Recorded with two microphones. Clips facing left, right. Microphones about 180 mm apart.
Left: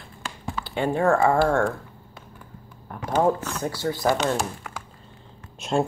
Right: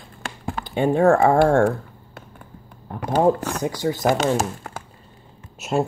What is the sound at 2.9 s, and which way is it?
Speech, 25° right (ahead or behind).